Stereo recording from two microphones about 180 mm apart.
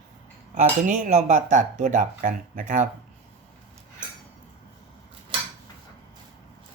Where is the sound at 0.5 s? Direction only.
45° right (ahead or behind).